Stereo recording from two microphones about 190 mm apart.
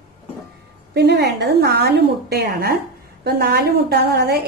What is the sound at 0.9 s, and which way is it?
A woman's voice, 60° right (ahead or behind).